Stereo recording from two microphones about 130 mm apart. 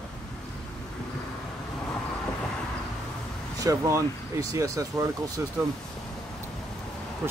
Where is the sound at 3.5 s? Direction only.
25° right (ahead or behind).